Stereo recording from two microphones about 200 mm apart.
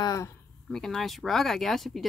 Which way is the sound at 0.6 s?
Centre (ahead or behind).